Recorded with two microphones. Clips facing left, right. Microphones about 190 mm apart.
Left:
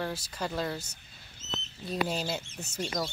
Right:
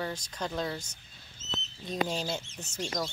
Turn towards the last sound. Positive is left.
turn(degrees=5)  # may be behind; listen again after turning